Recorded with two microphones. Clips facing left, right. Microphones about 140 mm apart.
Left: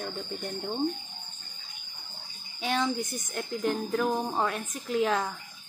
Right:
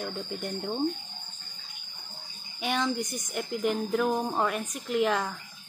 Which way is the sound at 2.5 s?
Centre (ahead or behind).